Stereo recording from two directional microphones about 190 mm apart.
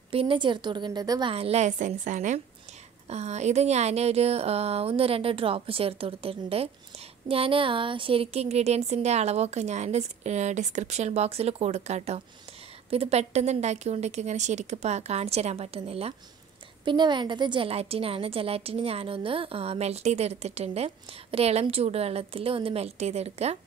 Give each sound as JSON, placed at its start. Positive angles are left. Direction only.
{"t": 0.1, "sound": "a woman's voice", "side_deg": -30}
{"t": 1.3, "sound": "a woman's voice", "side_deg": -35}